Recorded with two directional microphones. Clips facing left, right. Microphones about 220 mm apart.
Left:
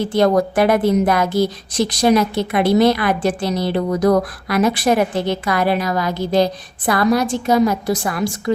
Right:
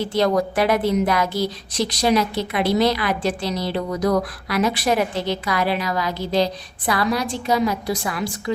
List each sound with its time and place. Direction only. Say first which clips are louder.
0.1 s a woman's voice: left 4 dB; 50° left (ahead or behind)